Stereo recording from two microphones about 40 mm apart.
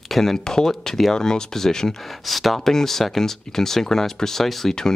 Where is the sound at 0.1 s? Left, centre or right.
Centre.